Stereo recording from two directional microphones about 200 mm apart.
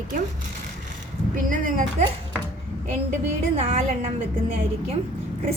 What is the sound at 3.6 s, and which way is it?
Speech, 35° right (ahead or behind).